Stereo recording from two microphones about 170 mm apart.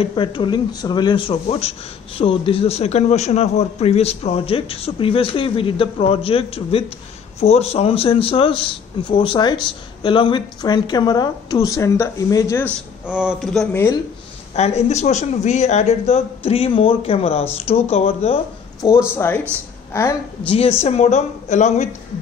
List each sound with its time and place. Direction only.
0.0 s a woman's voice: 30° left (ahead or behind)
12.6 s a man's voice: 5° right (ahead or behind)
14.5 s a man's voice: 40° left (ahead or behind)
19.1 s a woman's voice: 10° left (ahead or behind)
20.4 s a man's voice: 35° left (ahead or behind)